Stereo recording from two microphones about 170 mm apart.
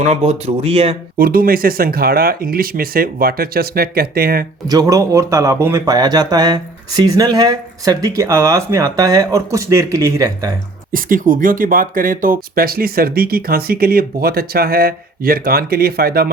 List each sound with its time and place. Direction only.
0.1 s speech: 40° right (ahead or behind)
1.2 s speech: 60° right (ahead or behind)
4.7 s speech: 20° right (ahead or behind)
10.9 s speech: 50° right (ahead or behind)